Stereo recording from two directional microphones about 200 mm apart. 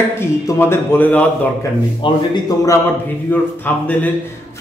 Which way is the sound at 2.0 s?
25° left (ahead or behind).